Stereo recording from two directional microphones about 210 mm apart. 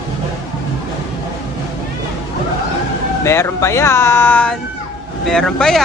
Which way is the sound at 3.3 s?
15° left (ahead or behind).